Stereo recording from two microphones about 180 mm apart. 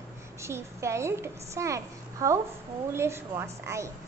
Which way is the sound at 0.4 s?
15° right (ahead or behind).